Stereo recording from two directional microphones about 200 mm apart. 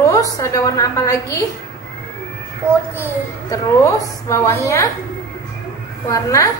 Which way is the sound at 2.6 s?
10° right (ahead or behind).